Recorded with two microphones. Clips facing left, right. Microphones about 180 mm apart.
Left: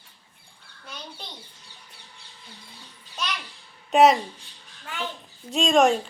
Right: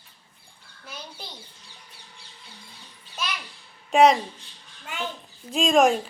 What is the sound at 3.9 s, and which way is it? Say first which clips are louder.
Speech: even; centre (ahead or behind).